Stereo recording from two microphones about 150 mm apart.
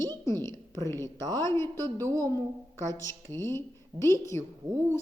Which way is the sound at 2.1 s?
25° right (ahead or behind).